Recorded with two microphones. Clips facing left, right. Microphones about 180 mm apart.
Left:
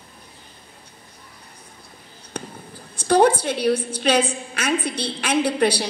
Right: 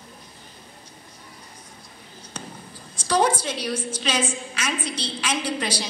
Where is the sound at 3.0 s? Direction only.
60° left (ahead or behind).